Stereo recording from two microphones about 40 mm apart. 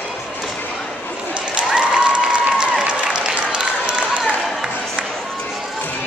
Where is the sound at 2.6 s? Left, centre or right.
Right.